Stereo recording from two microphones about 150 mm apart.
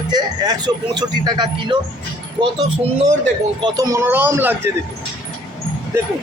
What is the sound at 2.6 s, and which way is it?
Speech, 40° right (ahead or behind).